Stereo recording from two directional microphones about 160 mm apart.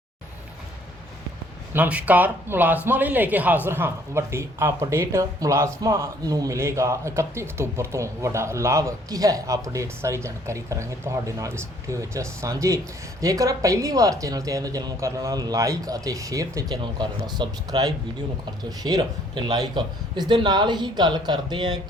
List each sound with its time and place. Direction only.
1.7 s speech: 10° right (ahead or behind); by 21.8 s 25° right (ahead or behind)